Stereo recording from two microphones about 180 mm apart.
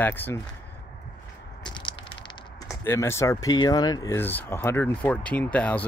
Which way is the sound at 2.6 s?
15° left (ahead or behind).